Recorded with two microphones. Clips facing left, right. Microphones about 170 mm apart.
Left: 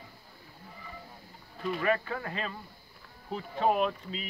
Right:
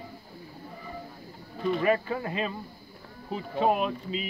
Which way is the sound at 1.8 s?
20° right (ahead or behind).